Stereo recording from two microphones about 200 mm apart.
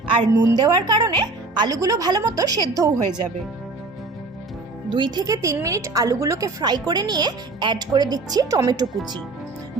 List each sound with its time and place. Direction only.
0.6 s a woman's voice: 20° right (ahead or behind)
4.9 s a woman's voice: 25° right (ahead or behind)